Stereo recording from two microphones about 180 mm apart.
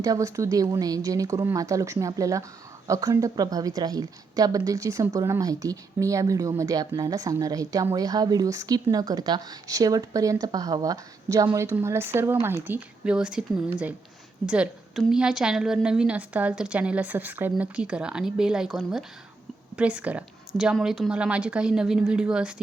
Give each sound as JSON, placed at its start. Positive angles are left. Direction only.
{"t": 0.0, "sound": "a woman's voice", "side_deg": -20}